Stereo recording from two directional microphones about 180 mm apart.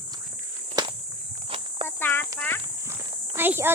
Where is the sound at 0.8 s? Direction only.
25° right (ahead or behind).